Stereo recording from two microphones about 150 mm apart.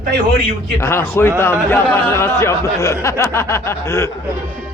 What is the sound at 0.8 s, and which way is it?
Speech, 15° left (ahead or behind).